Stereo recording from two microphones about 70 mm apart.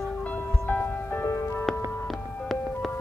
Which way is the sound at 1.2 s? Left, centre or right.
Left.